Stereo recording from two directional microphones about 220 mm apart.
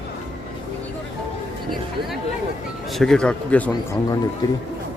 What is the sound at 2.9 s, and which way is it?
Speech, centre (ahead or behind).